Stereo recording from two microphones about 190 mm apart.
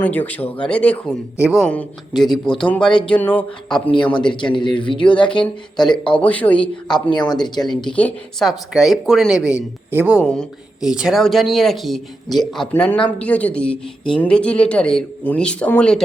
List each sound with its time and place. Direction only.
0.0 s speech: 10° left (ahead or behind)
1.4 s a woman's voice: 5° right (ahead or behind)
1.6 s a woman's voice: 5° left (ahead or behind)
3.9 s speech: 25° left (ahead or behind)
6.1 s speech: 5° left (ahead or behind)
7.3 s speech: 20° left (ahead or behind)
7.9 s a woman's voice: 5° left (ahead or behind); by 10.2 s 10° right (ahead or behind)
10.2 s a woman's voice: 5° left (ahead or behind)